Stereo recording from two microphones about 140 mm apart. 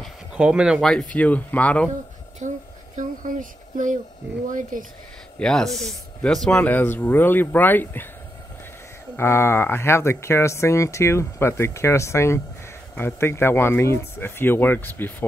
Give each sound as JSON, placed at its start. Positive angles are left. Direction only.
{"t": 0.3, "sound": "speech", "side_deg": -5}
{"t": 2.4, "sound": "speech", "side_deg": -60}
{"t": 5.4, "sound": "speech", "side_deg": 5}
{"t": 9.1, "sound": "speech", "side_deg": 15}